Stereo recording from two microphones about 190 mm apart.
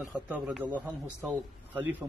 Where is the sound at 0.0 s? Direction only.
5° right (ahead or behind).